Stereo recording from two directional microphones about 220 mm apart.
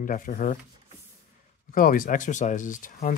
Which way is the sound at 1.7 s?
40° left (ahead or behind).